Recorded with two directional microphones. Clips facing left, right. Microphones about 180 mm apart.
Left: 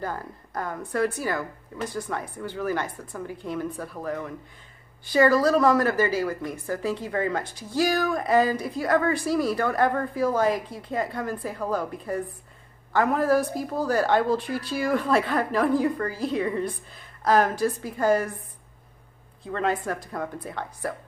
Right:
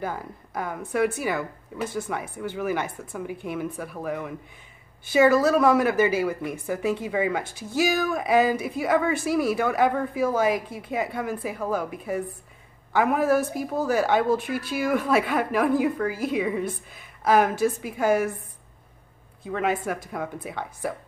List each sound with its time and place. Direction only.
0.0 s speech: 5° right (ahead or behind)
19.4 s speech: 5° right (ahead or behind)